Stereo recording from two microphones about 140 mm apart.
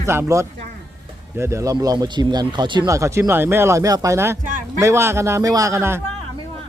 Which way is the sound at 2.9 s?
20° right (ahead or behind).